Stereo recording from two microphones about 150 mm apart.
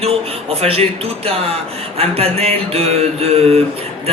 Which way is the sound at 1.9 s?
40° right (ahead or behind).